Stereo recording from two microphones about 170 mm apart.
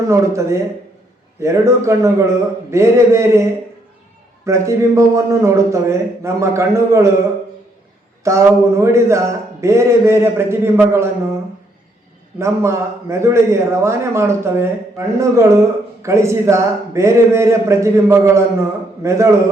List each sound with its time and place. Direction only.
0.1 s a man's voice: 15° right (ahead or behind)
4.4 s a man's voice: 15° right (ahead or behind)
8.2 s a man's voice: 15° right (ahead or behind)
12.4 s a man's voice: 15° right (ahead or behind)